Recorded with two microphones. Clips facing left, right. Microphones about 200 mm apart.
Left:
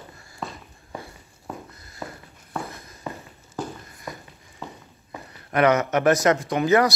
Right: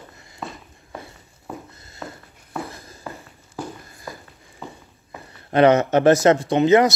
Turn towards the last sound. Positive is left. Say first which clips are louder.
# right 4 dB
turn(degrees=-20)  # may be behind; listen again after turning